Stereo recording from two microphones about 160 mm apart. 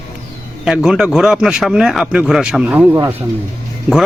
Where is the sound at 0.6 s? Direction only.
5° right (ahead or behind).